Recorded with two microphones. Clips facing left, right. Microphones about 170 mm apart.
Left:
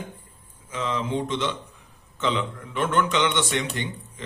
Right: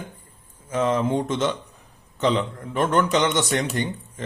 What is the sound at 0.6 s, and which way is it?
Speech, 45° right (ahead or behind).